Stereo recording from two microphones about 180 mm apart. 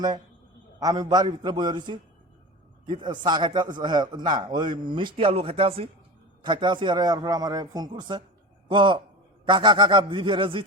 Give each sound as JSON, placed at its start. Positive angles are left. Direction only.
{"t": 0.8, "sound": "a man's voice", "side_deg": -20}